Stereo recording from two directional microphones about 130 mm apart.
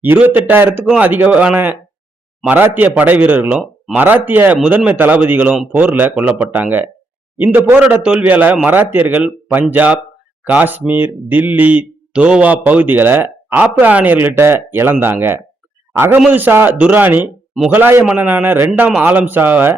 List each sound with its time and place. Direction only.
0.0 s speech: 15° right (ahead or behind)